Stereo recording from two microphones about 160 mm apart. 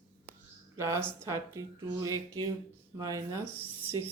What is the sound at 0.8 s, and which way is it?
Speech, 20° right (ahead or behind).